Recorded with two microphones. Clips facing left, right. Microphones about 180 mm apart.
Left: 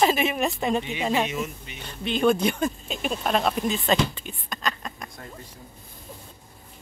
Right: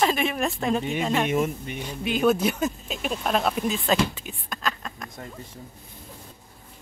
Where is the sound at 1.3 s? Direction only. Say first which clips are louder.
Right 7 dB; 50° right (ahead or behind).